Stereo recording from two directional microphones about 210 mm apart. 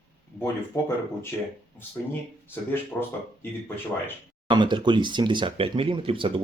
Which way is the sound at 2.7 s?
10° left (ahead or behind).